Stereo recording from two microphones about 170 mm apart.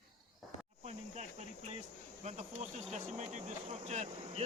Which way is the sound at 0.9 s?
40° right (ahead or behind).